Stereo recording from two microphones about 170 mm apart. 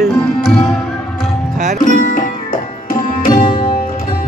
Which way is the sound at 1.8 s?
50° left (ahead or behind).